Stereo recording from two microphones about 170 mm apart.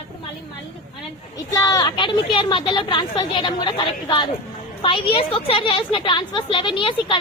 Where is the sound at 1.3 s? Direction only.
20° left (ahead or behind).